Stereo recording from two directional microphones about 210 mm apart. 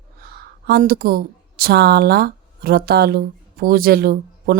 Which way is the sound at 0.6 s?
45° right (ahead or behind).